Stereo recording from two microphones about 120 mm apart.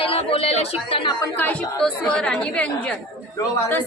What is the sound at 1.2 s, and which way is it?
A woman's voice, 15° left (ahead or behind).